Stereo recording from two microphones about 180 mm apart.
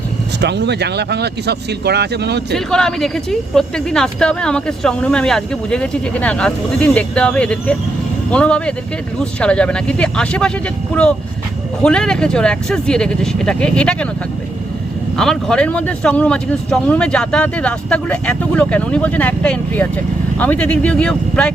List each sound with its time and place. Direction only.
0.4 s speech: 70° right (ahead or behind)
2.6 s speech: 5° left (ahead or behind)
11.8 s speech: 5° left (ahead or behind)
15.2 s speech: 5° left (ahead or behind)